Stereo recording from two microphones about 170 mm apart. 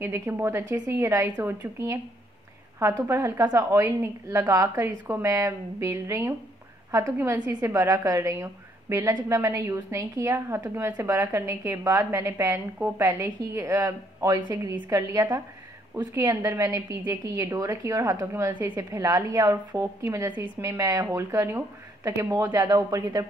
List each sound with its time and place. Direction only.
0.0 s a woman's voice: 15° right (ahead or behind)